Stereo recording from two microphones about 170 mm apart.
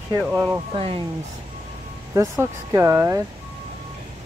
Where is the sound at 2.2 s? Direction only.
15° right (ahead or behind).